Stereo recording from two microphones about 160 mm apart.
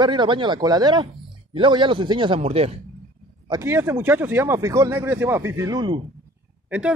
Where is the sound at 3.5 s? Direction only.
15° right (ahead or behind).